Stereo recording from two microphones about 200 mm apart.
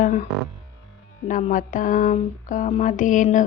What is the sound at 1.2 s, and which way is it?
Speech, 40° left (ahead or behind).